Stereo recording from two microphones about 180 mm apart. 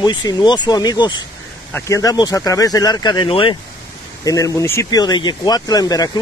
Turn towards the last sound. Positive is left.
turn(degrees=20)  # may be behind; listen again after turning